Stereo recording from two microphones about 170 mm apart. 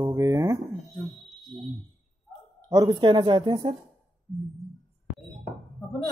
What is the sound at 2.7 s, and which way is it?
A woman's voice, 20° right (ahead or behind).